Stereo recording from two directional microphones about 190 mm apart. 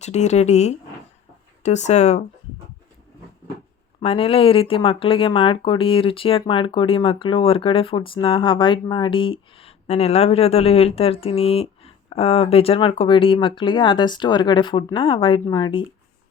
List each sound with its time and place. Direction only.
0.0 s speech: 35° left (ahead or behind)
4.0 s speech: 30° left (ahead or behind)